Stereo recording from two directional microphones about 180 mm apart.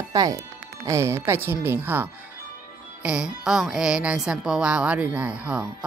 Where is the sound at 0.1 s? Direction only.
20° right (ahead or behind).